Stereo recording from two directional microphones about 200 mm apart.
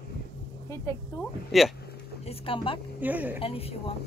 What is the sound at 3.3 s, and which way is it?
Speech, 30° left (ahead or behind).